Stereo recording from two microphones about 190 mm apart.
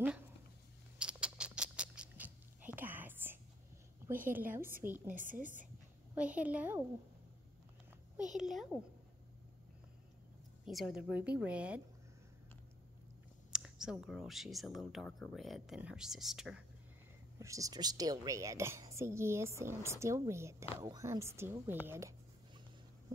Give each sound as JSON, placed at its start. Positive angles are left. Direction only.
{"t": 0.9, "sound": "rodents", "side_deg": -5}
{"t": 4.3, "sound": "a woman's voice", "side_deg": -10}
{"t": 5.1, "sound": "a woman's voice", "side_deg": -45}
{"t": 6.1, "sound": "a woman's voice", "side_deg": -5}
{"t": 8.2, "sound": "speech", "side_deg": -5}
{"t": 10.6, "sound": "a woman's voice", "side_deg": 0}
{"t": 13.5, "sound": "a sound", "side_deg": -5}
{"t": 14.0, "sound": "speech", "side_deg": 0}
{"t": 17.4, "sound": "a woman's voice", "side_deg": -15}